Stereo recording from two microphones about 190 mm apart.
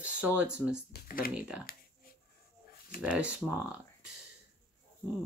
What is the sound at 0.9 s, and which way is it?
Speech, 50° left (ahead or behind).